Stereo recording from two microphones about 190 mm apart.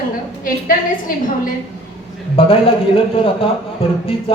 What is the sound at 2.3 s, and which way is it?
A man's voice, 30° left (ahead or behind).